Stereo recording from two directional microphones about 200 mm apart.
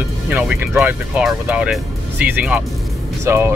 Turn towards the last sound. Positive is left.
turn(degrees=-10)  # may be behind; listen again after turning